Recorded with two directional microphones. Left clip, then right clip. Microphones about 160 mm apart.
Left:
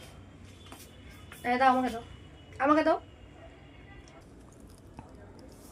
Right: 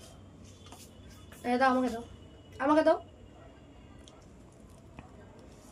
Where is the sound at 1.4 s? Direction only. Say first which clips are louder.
Left 2 dB; 15° right (ahead or behind).